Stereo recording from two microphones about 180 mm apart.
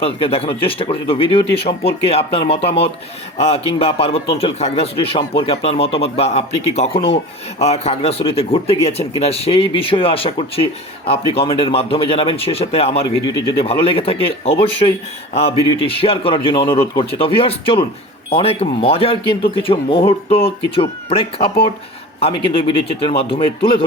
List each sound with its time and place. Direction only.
0.0 s speech: 30° left (ahead or behind)